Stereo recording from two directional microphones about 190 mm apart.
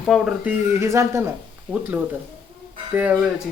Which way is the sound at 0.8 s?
15° right (ahead or behind).